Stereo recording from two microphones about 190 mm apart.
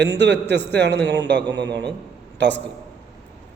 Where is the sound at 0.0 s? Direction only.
65° right (ahead or behind).